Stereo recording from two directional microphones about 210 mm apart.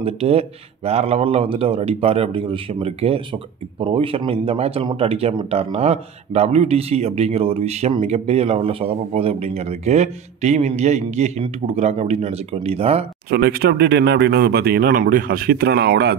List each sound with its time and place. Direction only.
0.0 s speech: 30° right (ahead or behind)
13.3 s speech: 45° right (ahead or behind)